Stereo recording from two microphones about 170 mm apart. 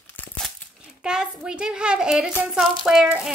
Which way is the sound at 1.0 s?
5° right (ahead or behind).